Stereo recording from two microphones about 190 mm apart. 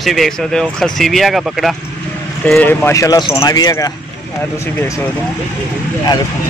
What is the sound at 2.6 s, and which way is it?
Speech, 10° left (ahead or behind).